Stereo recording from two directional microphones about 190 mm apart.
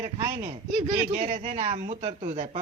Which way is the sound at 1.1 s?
35° right (ahead or behind).